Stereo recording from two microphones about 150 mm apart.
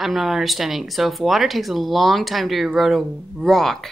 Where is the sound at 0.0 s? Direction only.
Centre (ahead or behind).